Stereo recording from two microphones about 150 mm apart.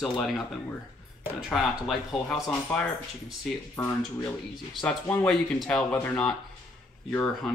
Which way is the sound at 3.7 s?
15° left (ahead or behind).